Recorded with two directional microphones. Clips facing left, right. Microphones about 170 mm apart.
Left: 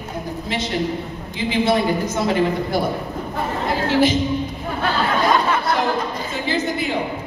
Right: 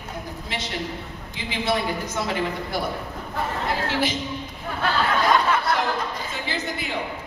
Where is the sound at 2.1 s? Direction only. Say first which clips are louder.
Left 6 dB; 30° left (ahead or behind).